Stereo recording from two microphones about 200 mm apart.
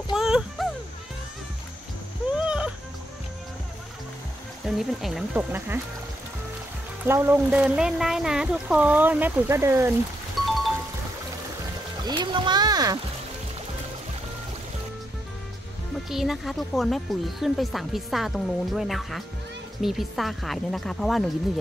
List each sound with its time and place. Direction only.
0.1 s a sound: centre (ahead or behind)
2.3 s music: 5° right (ahead or behind)
4.6 s speech: centre (ahead or behind)
7.1 s speech: 10° right (ahead or behind)
12.0 s music: 20° right (ahead or behind)
16.1 s speech: centre (ahead or behind)